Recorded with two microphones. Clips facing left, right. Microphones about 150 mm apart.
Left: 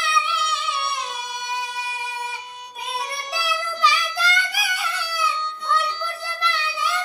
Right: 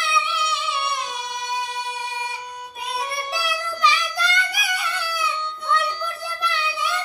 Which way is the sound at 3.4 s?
Centre (ahead or behind).